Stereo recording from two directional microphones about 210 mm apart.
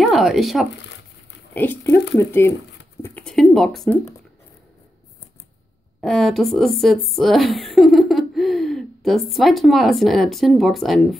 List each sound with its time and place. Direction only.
0.0 s speech: centre (ahead or behind)
1.5 s speech: 10° left (ahead or behind)
5.9 s speech: centre (ahead or behind)